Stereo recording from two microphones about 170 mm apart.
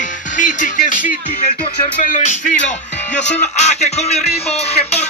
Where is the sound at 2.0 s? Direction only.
45° left (ahead or behind).